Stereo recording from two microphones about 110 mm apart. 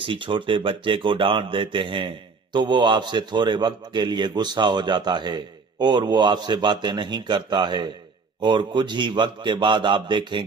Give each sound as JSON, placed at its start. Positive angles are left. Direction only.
{"t": 0.0, "sound": "speech", "side_deg": -50}